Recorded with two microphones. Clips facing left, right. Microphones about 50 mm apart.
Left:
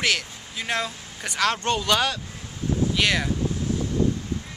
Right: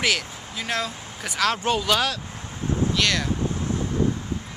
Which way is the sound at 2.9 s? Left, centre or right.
Centre.